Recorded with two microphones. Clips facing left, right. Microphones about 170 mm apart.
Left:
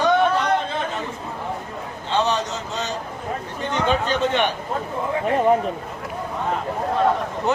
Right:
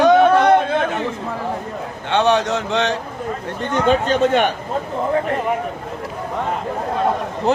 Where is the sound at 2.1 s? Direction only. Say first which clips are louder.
Right 6 dB; 65° right (ahead or behind).